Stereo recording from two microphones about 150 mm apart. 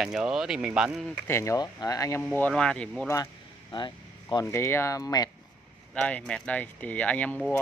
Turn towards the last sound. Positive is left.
turn(degrees=10)  # may be behind; listen again after turning